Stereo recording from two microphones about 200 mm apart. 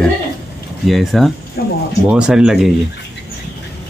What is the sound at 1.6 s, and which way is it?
Speech, 55° left (ahead or behind).